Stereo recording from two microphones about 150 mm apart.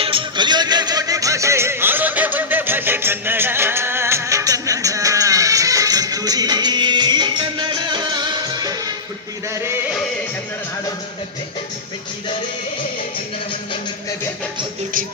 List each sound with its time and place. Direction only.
0.0 s music: 35° right (ahead or behind); by 9.7 s 20° right (ahead or behind)